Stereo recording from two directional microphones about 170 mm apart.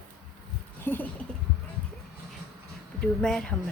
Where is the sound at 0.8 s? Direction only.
10° left (ahead or behind).